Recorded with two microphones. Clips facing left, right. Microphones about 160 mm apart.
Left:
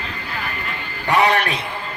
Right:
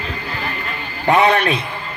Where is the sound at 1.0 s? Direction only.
30° right (ahead or behind).